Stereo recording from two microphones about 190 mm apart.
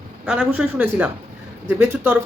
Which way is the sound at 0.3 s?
10° right (ahead or behind).